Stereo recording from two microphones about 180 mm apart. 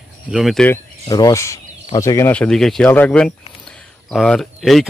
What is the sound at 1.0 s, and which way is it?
Speech, 20° left (ahead or behind).